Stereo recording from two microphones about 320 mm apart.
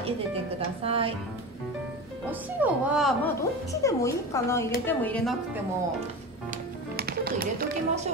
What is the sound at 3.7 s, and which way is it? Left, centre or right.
Speech, centre.